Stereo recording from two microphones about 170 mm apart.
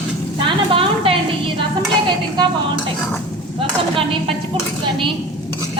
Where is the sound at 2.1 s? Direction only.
25° right (ahead or behind).